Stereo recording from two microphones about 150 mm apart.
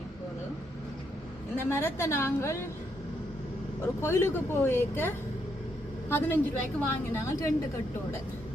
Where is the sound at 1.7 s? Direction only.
15° left (ahead or behind).